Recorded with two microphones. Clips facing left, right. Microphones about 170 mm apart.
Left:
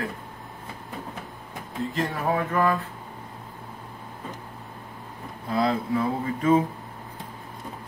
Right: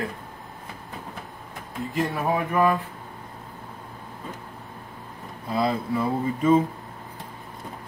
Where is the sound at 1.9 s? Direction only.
15° right (ahead or behind).